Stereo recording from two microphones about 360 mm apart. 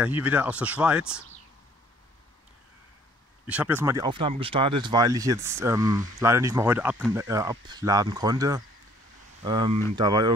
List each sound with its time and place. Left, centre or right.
0.0 s speech: centre
3.4 s speech: centre